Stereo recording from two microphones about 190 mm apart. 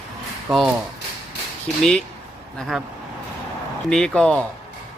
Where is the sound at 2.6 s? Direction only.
Centre (ahead or behind).